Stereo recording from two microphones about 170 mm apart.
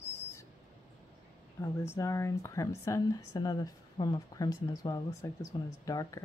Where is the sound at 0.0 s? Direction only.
15° left (ahead or behind).